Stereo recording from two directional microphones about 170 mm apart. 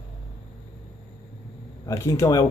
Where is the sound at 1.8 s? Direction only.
15° left (ahead or behind).